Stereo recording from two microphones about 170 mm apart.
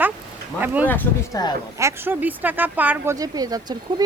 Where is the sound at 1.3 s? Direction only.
25° left (ahead or behind).